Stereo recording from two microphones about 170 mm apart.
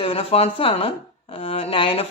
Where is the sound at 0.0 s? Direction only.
35° left (ahead or behind).